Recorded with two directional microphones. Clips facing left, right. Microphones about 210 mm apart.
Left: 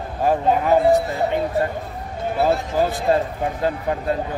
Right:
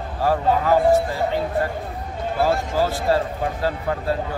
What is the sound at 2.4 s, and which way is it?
Speech, 20° left (ahead or behind).